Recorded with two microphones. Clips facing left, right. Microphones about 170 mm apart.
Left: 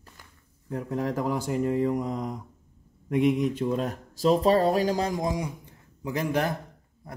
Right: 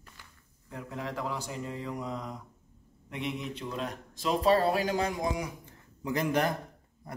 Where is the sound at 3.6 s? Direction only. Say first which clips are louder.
Left 9 dB; 40° left (ahead or behind).